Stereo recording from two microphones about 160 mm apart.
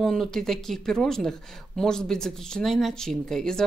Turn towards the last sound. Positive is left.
turn(degrees=5)  # may be behind; listen again after turning